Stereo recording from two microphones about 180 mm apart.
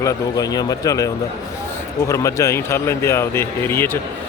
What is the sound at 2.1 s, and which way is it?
A man's voice, 15° left (ahead or behind).